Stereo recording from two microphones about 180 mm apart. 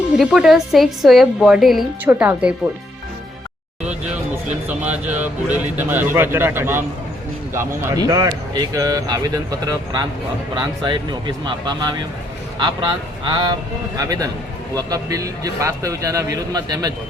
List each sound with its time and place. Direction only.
0.2 s a woman's voice: 5° right (ahead or behind)
4.7 s speech: 10° right (ahead or behind)